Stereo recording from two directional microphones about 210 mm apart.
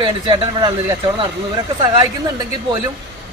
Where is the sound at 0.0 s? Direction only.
20° right (ahead or behind).